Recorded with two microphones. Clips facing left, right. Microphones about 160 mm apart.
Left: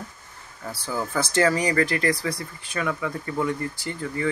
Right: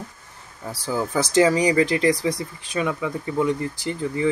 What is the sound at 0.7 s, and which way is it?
Speech, 15° right (ahead or behind).